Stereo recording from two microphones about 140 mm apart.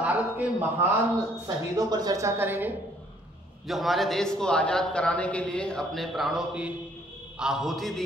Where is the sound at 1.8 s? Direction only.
30° right (ahead or behind).